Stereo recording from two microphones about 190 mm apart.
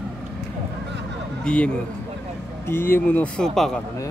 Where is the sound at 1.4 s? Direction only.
5° left (ahead or behind).